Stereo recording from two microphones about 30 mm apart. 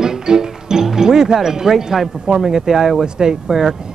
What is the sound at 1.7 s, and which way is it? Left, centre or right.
Speech, centre.